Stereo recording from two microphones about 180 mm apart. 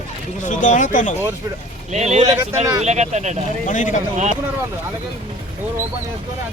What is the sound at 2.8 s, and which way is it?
Speech, 40° right (ahead or behind).